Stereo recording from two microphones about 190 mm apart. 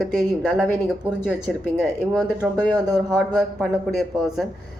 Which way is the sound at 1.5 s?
Centre (ahead or behind).